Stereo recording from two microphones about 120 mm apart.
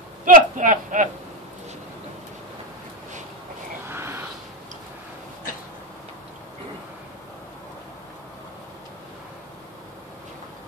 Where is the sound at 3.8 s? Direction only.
20° right (ahead or behind).